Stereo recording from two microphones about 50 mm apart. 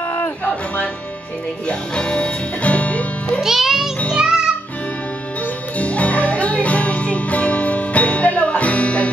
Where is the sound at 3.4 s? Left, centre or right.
Centre.